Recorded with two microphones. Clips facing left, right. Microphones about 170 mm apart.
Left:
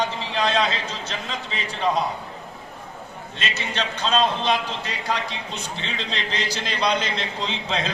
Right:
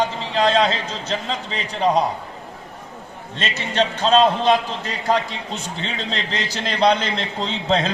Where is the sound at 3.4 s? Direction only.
35° right (ahead or behind).